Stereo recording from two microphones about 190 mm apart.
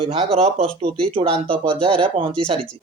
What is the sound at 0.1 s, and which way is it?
Speech, 30° right (ahead or behind).